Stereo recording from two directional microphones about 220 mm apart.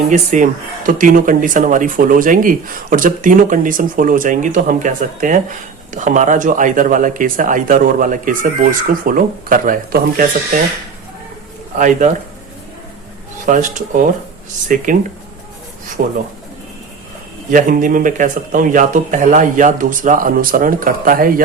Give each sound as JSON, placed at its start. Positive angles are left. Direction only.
{"t": 0.1, "sound": "speech", "side_deg": -35}
{"t": 11.8, "sound": "speech", "side_deg": -35}
{"t": 13.4, "sound": "speech", "side_deg": -35}
{"t": 16.0, "sound": "speech", "side_deg": -40}
{"t": 17.5, "sound": "speech", "side_deg": -35}